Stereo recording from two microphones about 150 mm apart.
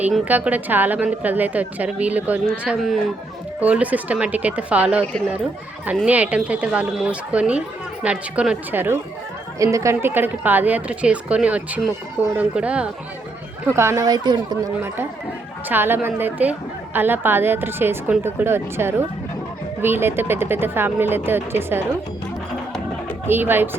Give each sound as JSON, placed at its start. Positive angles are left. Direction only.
{"t": 0.3, "sound": "a woman's voice", "side_deg": -10}
{"t": 6.1, "sound": "a woman's voice", "side_deg": -10}
{"t": 15.7, "sound": "a woman's voice", "side_deg": -15}
{"t": 23.2, "sound": "a woman's voice", "side_deg": -15}